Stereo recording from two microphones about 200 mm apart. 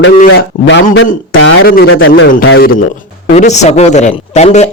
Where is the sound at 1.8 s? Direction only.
75° left (ahead or behind).